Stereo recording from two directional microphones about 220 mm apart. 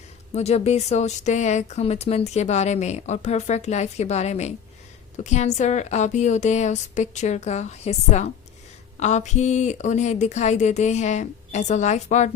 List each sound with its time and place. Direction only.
0.3 s speech: 30° left (ahead or behind)